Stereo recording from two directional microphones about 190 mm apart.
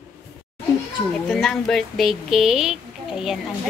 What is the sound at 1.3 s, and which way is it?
A woman's voice, centre (ahead or behind).